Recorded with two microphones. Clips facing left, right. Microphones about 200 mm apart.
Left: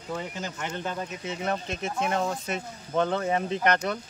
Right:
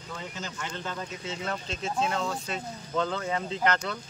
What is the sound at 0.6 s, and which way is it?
Speech, 20° left (ahead or behind).